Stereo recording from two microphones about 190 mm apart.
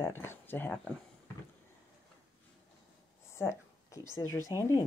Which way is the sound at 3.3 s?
15° left (ahead or behind).